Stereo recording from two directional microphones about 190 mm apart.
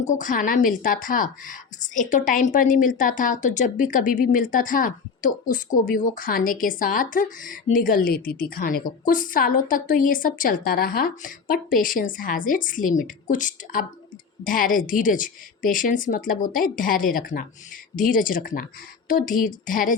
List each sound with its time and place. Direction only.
0.0 s a woman's voice: 40° left (ahead or behind)